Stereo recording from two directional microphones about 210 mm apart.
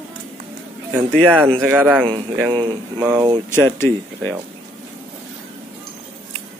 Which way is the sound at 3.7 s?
10° left (ahead or behind).